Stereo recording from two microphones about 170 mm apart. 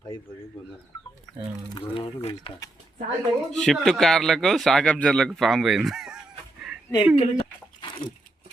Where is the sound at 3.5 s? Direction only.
5° left (ahead or behind).